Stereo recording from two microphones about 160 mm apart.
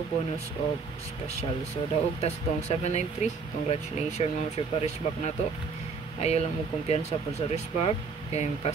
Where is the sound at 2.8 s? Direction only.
45° left (ahead or behind).